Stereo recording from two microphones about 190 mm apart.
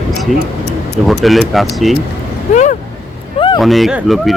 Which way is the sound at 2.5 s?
40° left (ahead or behind).